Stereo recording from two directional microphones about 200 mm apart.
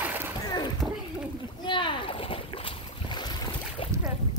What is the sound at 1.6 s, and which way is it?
Boat, 25° left (ahead or behind).